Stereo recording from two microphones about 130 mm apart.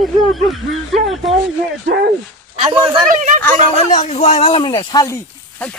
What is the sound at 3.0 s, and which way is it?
Speech, 70° right (ahead or behind).